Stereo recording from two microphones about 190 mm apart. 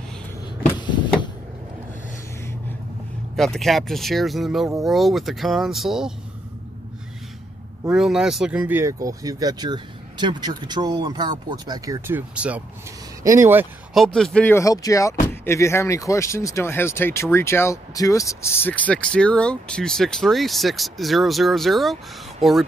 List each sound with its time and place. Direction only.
0.7 s vehicle: 25° left (ahead or behind)
3.3 s speech: centre (ahead or behind)
7.9 s speech: centre (ahead or behind)
13.9 s speech: centre (ahead or behind)